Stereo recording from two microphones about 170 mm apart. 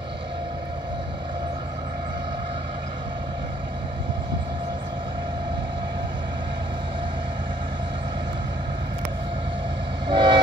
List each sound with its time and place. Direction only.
10.0 s train: 25° right (ahead or behind)